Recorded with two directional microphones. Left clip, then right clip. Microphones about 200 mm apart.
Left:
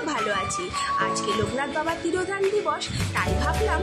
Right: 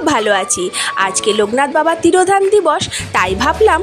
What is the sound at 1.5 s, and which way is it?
A woman's voice, 45° right (ahead or behind).